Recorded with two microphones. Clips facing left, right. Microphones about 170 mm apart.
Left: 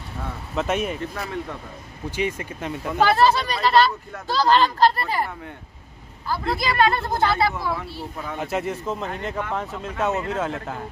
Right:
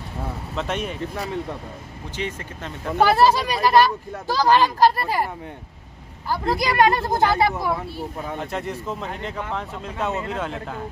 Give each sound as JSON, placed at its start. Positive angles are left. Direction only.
{"t": 0.6, "sound": "speech", "side_deg": 5}
{"t": 1.1, "sound": "speech", "side_deg": -20}
{"t": 2.0, "sound": "speech", "side_deg": 10}
{"t": 3.0, "sound": "speech", "side_deg": -10}
{"t": 8.4, "sound": "speech", "side_deg": 5}